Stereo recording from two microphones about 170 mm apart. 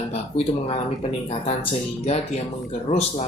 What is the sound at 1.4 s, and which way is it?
Speech, 40° left (ahead or behind).